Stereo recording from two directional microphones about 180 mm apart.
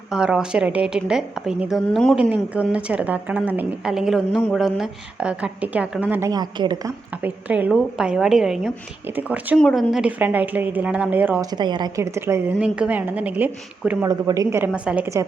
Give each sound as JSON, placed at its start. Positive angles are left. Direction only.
{"t": 0.1, "sound": "a woman's voice", "side_deg": -5}
{"t": 2.3, "sound": "a woman's voice", "side_deg": -5}
{"t": 7.2, "sound": "a woman's voice", "side_deg": -10}
{"t": 9.6, "sound": "a woman's voice", "side_deg": 0}
{"t": 11.5, "sound": "a woman's voice", "side_deg": -25}
{"t": 14.1, "sound": "a woman's voice", "side_deg": -20}